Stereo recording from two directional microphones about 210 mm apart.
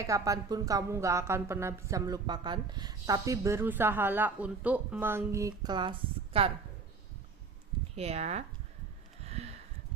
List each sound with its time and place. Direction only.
0.0 s speech: 15° right (ahead or behind)
7.9 s speech: 30° right (ahead or behind)
9.2 s a sound: 30° right (ahead or behind)